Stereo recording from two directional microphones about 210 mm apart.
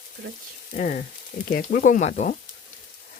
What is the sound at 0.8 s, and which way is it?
Speech, 40° left (ahead or behind).